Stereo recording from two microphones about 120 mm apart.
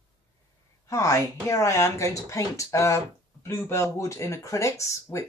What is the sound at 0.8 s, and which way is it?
Speech, 25° left (ahead or behind).